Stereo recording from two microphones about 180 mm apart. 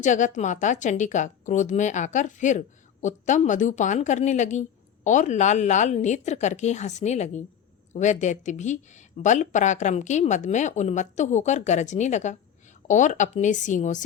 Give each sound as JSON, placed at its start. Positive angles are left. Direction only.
{"t": 0.0, "sound": "a woman's voice", "side_deg": 45}